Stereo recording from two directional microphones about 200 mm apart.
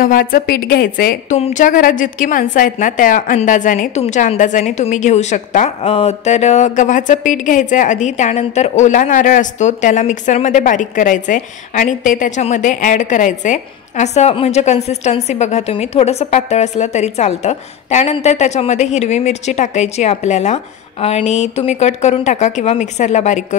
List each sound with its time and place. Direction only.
0.0 s a woman's voice: 45° left (ahead or behind)